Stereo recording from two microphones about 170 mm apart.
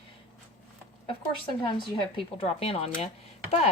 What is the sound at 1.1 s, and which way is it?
Speech, 30° left (ahead or behind).